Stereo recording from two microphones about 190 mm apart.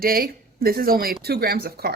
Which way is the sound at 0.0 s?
50° right (ahead or behind).